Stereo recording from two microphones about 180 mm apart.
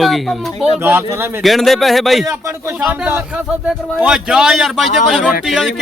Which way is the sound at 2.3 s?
15° right (ahead or behind).